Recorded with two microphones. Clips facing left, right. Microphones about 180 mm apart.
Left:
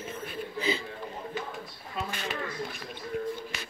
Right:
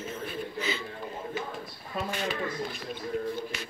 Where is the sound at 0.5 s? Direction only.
30° left (ahead or behind).